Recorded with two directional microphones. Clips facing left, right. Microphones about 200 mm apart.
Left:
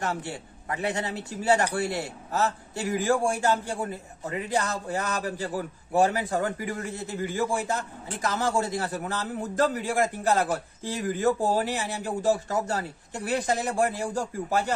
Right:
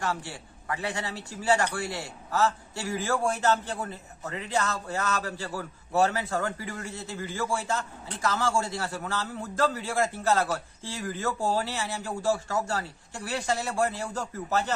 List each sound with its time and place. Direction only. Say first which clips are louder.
0.3 s a man's voice: left 2 dB; 20° left (ahead or behind)